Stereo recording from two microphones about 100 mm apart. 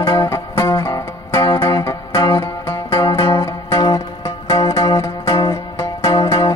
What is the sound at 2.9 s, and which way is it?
Music, 55° left (ahead or behind).